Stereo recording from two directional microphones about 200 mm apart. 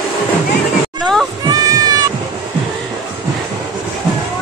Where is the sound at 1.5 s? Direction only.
20° right (ahead or behind).